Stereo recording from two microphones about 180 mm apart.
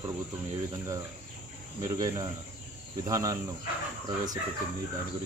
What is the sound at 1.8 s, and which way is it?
Speech, 20° right (ahead or behind).